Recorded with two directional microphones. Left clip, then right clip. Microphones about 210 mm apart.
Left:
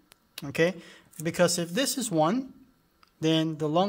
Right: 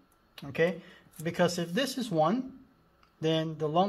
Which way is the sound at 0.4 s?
35° left (ahead or behind).